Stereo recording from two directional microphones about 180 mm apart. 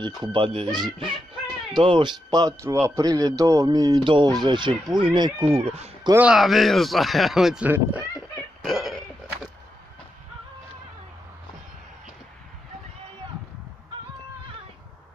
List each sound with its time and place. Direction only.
0.0 s speech: 25° right (ahead or behind)
6.1 s speech: 5° right (ahead or behind)
8.6 s a sound: centre (ahead or behind)